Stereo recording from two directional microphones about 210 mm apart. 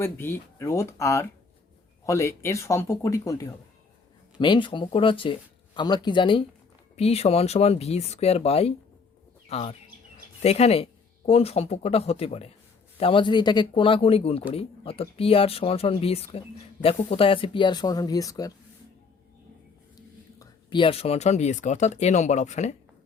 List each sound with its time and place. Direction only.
0.0 s speech: 10° left (ahead or behind)
20.0 s speech: 20° left (ahead or behind); by 22.7 s 35° left (ahead or behind)